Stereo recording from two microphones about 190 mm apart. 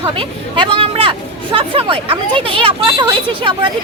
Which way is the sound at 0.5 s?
25° right (ahead or behind).